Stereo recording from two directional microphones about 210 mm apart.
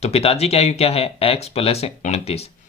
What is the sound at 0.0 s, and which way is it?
Speech, 30° left (ahead or behind).